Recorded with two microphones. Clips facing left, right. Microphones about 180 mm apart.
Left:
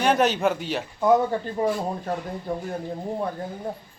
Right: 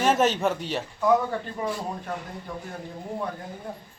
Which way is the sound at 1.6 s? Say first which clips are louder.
Left 5 dB; 35° left (ahead or behind).